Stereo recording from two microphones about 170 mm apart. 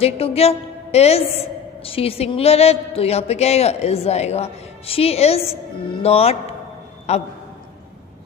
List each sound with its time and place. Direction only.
0.0 s a woman's voice: 35° left (ahead or behind)